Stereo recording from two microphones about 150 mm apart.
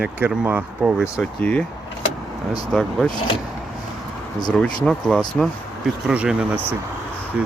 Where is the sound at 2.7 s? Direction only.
5° left (ahead or behind).